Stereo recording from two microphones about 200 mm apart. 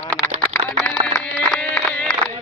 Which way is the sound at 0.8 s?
5° left (ahead or behind).